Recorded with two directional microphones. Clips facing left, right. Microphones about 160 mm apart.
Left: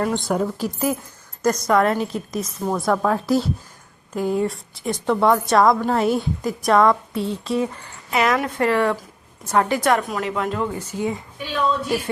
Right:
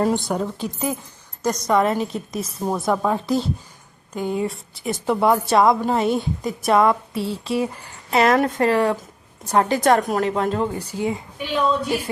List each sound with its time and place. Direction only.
0.3 s a woman's voice: 5° left (ahead or behind)
7.8 s a woman's voice: 35° right (ahead or behind)
11.0 s a woman's voice: 15° right (ahead or behind)